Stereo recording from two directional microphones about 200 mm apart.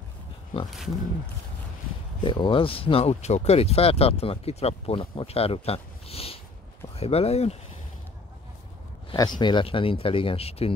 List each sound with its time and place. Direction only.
0.7 s speech: centre (ahead or behind)
2.2 s speech: 25° left (ahead or behind)
9.1 s speech: 20° left (ahead or behind)